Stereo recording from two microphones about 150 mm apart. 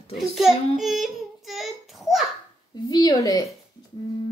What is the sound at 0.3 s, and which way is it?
A child's voice, centre (ahead or behind).